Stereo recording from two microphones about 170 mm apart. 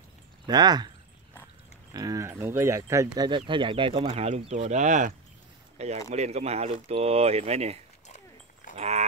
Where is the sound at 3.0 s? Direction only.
25° right (ahead or behind).